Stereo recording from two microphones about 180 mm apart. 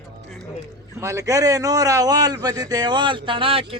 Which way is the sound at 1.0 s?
15° right (ahead or behind).